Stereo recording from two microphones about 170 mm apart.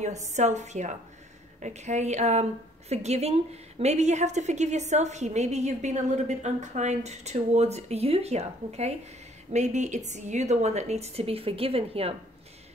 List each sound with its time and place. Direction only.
0.0 s a woman's voice: 45° right (ahead or behind)